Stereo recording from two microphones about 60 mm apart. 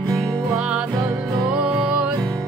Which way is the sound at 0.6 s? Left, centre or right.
Centre.